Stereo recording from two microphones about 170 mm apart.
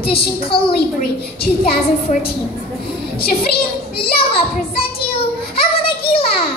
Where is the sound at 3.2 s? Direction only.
65° left (ahead or behind).